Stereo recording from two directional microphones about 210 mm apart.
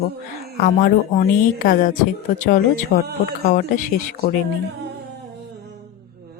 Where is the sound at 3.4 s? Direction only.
40° left (ahead or behind).